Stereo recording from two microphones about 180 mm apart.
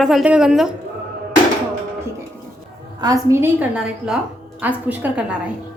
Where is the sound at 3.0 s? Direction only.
15° right (ahead or behind).